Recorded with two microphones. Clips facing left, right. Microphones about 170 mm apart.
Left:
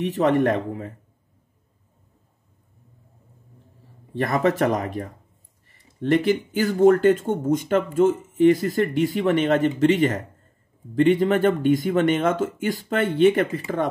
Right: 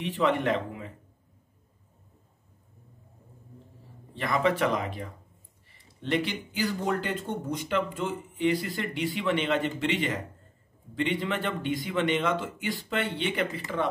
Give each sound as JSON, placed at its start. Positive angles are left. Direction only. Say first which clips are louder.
{"t": 0.0, "sound": "speech", "louder": "left 7 dB", "side_deg": 45}
{"t": 4.1, "sound": "speech", "louder": "left 5 dB", "side_deg": 45}